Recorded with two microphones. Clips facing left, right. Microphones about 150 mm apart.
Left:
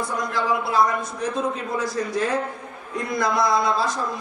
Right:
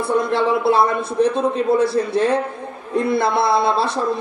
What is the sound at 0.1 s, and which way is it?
A man's voice, 30° right (ahead or behind).